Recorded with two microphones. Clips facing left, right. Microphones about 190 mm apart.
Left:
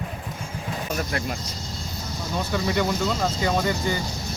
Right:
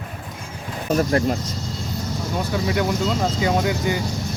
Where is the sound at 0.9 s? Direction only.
40° right (ahead or behind).